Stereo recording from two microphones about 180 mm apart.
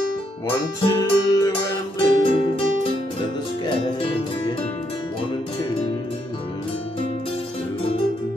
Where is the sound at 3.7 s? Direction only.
30° left (ahead or behind).